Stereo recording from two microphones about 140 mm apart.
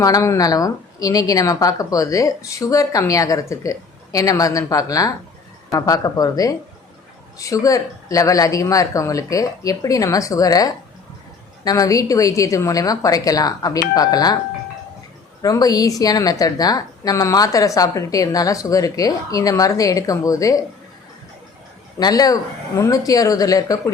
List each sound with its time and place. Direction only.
0.0 s a woman's voice: 25° left (ahead or behind)
15.4 s a woman's voice: 25° left (ahead or behind)
21.9 s a woman's voice: 25° left (ahead or behind)